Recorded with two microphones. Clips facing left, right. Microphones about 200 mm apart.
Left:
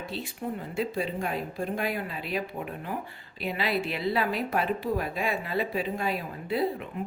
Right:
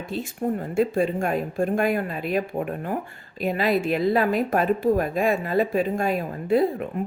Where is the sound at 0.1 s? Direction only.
50° right (ahead or behind).